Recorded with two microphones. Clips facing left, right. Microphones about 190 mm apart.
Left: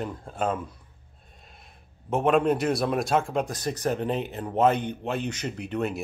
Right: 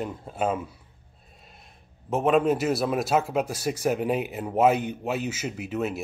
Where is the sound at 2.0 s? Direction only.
Centre (ahead or behind).